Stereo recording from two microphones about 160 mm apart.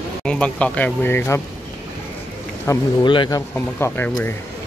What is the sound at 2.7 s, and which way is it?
Speech, 20° left (ahead or behind).